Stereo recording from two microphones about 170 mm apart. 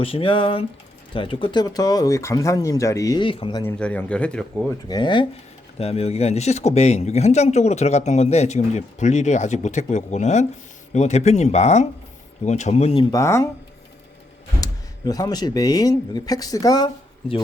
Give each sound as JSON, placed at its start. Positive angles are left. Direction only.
{"t": 0.0, "sound": "speech", "side_deg": 35}
{"t": 3.7, "sound": "speech", "side_deg": 10}
{"t": 4.9, "sound": "speech", "side_deg": 25}
{"t": 13.1, "sound": "speech", "side_deg": 15}
{"t": 14.6, "sound": "speech", "side_deg": 20}